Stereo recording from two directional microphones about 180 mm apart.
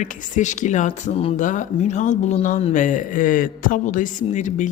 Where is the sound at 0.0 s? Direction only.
45° left (ahead or behind).